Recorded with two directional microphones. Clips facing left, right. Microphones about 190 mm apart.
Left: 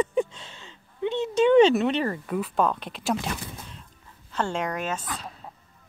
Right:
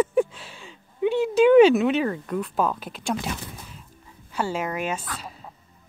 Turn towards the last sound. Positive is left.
turn(degrees=-10)  # may be behind; listen again after turning